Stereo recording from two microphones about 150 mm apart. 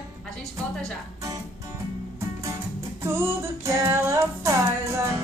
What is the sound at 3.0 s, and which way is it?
Music, 15° right (ahead or behind).